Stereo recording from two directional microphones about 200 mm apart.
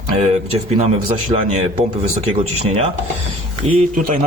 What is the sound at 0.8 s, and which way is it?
Speech, 30° right (ahead or behind).